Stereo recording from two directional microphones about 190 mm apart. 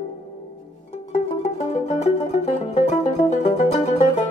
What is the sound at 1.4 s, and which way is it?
Music, 35° left (ahead or behind).